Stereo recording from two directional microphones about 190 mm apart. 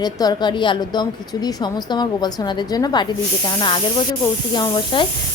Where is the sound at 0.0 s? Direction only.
20° left (ahead or behind).